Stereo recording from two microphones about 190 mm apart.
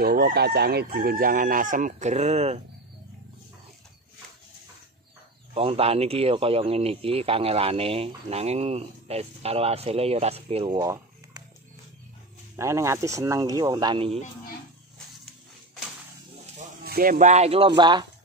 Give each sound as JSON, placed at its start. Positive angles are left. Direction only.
{"t": 0.0, "sound": "chicken", "side_deg": -55}
{"t": 5.5, "sound": "speech", "side_deg": -30}
{"t": 12.5, "sound": "speech", "side_deg": -15}
{"t": 16.8, "sound": "speech", "side_deg": -50}